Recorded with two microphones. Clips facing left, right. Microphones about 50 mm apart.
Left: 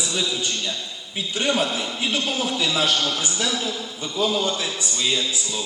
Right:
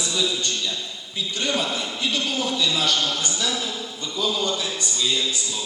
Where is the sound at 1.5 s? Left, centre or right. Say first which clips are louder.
Left 2 dB; left.